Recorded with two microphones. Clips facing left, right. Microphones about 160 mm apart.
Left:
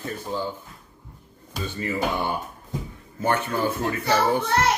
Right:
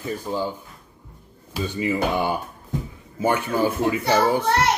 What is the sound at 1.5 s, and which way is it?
A man's voice, 10° right (ahead or behind).